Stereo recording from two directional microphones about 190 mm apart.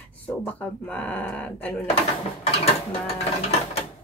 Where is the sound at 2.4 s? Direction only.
30° left (ahead or behind).